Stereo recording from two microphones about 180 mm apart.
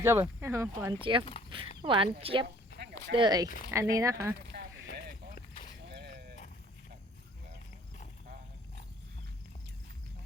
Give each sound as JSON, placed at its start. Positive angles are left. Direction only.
{"t": 0.0, "sound": "speech", "side_deg": -15}
{"t": 1.4, "sound": "dog", "side_deg": 30}
{"t": 1.8, "sound": "speech", "side_deg": -30}
{"t": 5.9, "sound": "a sound", "side_deg": -65}